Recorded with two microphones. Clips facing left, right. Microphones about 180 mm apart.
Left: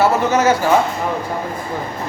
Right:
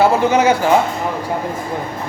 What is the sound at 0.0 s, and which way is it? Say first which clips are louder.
Speech: right 2 dB; 15° right (ahead or behind).